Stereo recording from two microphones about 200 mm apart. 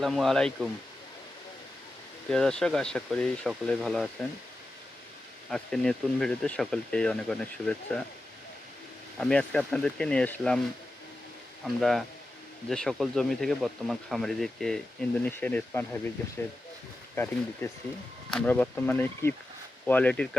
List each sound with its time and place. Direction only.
0.0 s speech: centre (ahead or behind)
2.3 s speech: 5° left (ahead or behind)
5.5 s speech: centre (ahead or behind)
9.1 s speech: 5° left (ahead or behind)
11.6 s speech: centre (ahead or behind)
17.6 s speech: 15° left (ahead or behind)